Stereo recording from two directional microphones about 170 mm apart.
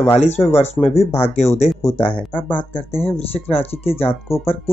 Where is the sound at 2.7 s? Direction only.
35° left (ahead or behind).